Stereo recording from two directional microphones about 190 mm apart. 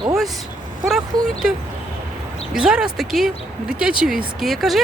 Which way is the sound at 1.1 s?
20° right (ahead or behind).